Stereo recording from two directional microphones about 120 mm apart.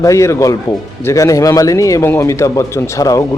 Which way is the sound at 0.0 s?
25° left (ahead or behind).